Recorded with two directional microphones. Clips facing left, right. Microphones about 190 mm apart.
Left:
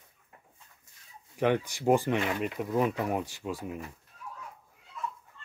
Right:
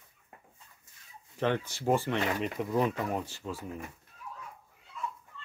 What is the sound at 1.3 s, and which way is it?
Speech, 15° left (ahead or behind).